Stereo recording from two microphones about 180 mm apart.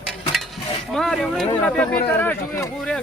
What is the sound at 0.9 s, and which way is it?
Speech, centre (ahead or behind).